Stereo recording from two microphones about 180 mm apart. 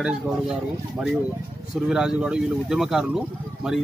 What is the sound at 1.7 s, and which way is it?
Speech, 5° right (ahead or behind).